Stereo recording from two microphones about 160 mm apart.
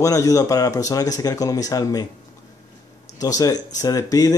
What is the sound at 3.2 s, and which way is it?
Speech, 20° left (ahead or behind).